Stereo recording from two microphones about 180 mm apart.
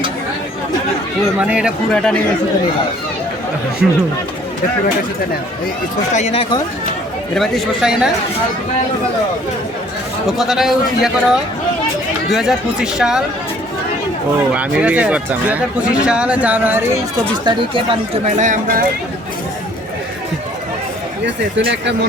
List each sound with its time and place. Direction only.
1.4 s speech: 5° right (ahead or behind)
3.8 s speech: 5° right (ahead or behind)
6.1 s speech: 35° left (ahead or behind)
7.3 s speech: centre (ahead or behind)
10.2 s speech: centre (ahead or behind)
14.5 s speech: 5° right (ahead or behind)
17.4 s speech: 25° right (ahead or behind)
18.3 s speech: 45° right (ahead or behind)